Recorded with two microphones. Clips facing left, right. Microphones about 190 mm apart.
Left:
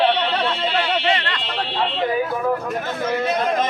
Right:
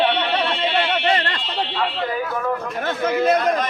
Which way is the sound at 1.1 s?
40° right (ahead or behind).